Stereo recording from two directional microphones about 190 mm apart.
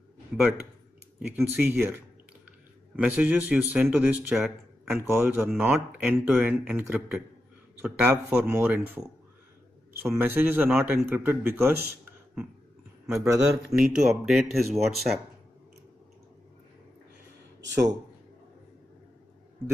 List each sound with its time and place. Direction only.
1.3 s a man's voice: 10° right (ahead or behind)
10.0 s a man's voice: 10° right (ahead or behind)
13.2 s a man's voice: 15° right (ahead or behind)
13.7 s speech: centre (ahead or behind)
17.6 s a sound: 65° right (ahead or behind)